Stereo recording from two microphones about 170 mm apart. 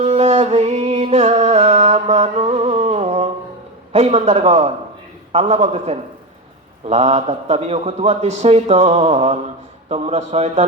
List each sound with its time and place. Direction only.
0.0 s music: 40° right (ahead or behind)
3.9 s a man's voice: 35° right (ahead or behind)